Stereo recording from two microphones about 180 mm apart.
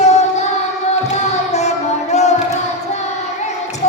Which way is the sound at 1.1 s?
40° left (ahead or behind).